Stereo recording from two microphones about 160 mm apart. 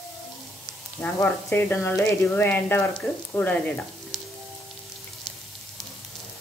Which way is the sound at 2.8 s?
5° left (ahead or behind).